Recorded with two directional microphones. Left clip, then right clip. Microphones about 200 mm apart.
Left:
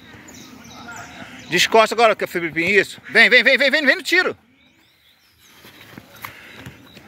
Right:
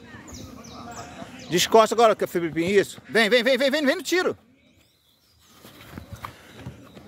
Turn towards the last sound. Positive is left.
turn(degrees=0)  # may be behind; listen again after turning